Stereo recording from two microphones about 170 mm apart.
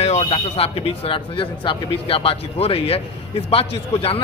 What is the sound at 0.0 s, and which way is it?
Speech, 35° left (ahead or behind).